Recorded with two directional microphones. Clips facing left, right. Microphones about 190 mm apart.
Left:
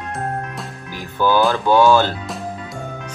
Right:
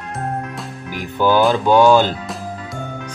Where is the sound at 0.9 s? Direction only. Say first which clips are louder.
Right 2 dB; 15° right (ahead or behind).